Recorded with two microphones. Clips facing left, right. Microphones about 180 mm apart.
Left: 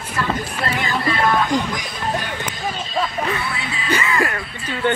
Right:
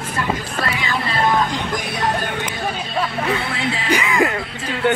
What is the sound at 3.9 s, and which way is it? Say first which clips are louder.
Music: right 2 dB; 15° right (ahead or behind).